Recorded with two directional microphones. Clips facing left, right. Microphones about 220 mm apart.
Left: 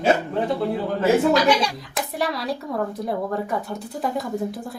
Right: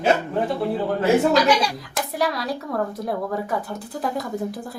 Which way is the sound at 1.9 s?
Centre (ahead or behind).